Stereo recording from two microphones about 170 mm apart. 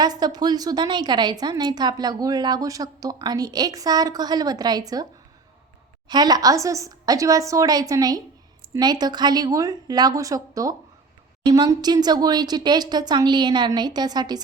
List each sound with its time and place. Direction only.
0.0 s a woman's voice: 25° right (ahead or behind)
6.1 s a woman's voice: 25° right (ahead or behind)